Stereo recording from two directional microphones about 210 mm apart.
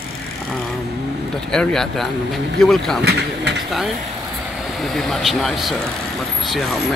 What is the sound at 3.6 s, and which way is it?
Speech, centre (ahead or behind).